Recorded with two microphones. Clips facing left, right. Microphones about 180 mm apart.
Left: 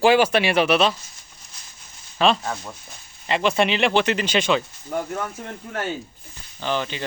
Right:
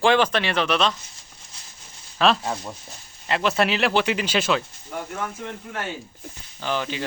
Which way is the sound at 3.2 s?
Centre (ahead or behind).